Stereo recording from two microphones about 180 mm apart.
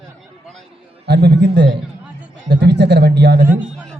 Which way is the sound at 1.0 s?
70° right (ahead or behind).